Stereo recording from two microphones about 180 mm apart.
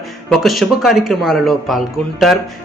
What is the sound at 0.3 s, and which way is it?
A woman's voice, centre (ahead or behind).